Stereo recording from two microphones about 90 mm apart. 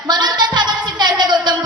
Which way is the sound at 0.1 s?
50° right (ahead or behind).